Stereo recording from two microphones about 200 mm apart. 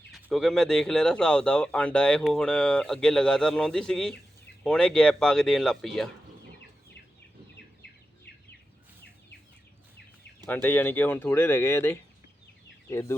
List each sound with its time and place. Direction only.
0.1 s speech: centre (ahead or behind)
7.5 s bird: 55° left (ahead or behind)
10.4 s speech: 10° left (ahead or behind)